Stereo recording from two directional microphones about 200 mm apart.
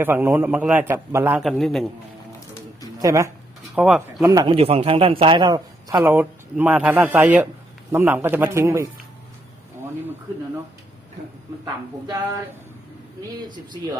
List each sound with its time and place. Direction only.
0.0 s a man's voice: 10° right (ahead or behind)
3.0 s speech: 15° right (ahead or behind)
3.8 s speech: 5° right (ahead or behind)
4.2 s a man's voice: 20° right (ahead or behind)
11.6 s a man's voice: 15° right (ahead or behind)